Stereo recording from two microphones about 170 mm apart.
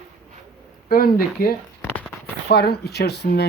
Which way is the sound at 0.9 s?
60° left (ahead or behind).